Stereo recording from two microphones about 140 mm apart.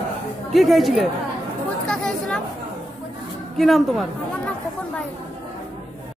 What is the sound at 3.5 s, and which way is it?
Speech, centre (ahead or behind).